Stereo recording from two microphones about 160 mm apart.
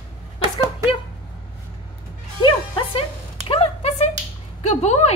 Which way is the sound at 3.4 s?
40° left (ahead or behind).